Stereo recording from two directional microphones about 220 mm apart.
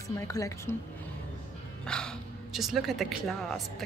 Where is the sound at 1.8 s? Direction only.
5° left (ahead or behind).